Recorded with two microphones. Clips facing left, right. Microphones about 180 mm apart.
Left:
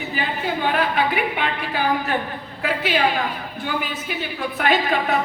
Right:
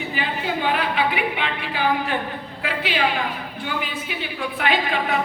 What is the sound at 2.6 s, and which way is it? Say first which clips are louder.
A woman's voice: left 3 dB; 45° left (ahead or behind).